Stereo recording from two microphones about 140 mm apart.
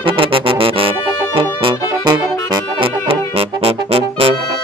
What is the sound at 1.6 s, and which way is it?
Saxophone, 35° right (ahead or behind).